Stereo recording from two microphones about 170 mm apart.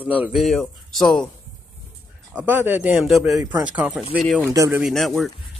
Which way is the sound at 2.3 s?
10° right (ahead or behind).